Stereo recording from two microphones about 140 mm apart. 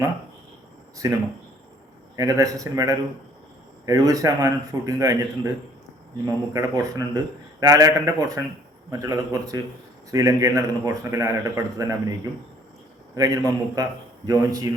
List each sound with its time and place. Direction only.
0.9 s a man's voice: 25° right (ahead or behind)